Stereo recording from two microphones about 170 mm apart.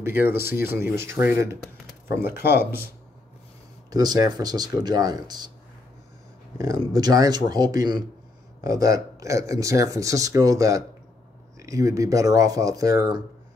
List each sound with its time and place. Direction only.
0.0 s speech: 15° right (ahead or behind)
3.9 s speech: 20° right (ahead or behind)
6.8 s speech: 25° right (ahead or behind)